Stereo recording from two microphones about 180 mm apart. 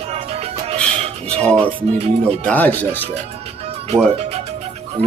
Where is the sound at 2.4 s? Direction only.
10° left (ahead or behind).